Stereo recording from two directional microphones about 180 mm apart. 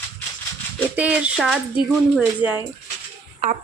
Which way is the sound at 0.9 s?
5° right (ahead or behind).